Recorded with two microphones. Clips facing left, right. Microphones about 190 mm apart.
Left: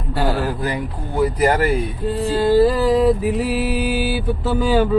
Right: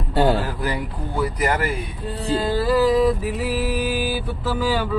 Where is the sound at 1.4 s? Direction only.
35° left (ahead or behind).